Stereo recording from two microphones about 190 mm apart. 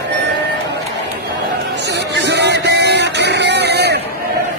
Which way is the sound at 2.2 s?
65° right (ahead or behind).